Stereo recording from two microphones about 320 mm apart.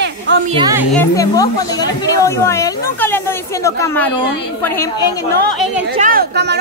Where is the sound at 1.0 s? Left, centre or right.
Centre.